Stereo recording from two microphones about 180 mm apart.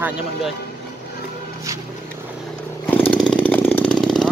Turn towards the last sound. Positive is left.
turn(degrees=5)  # may be behind; listen again after turning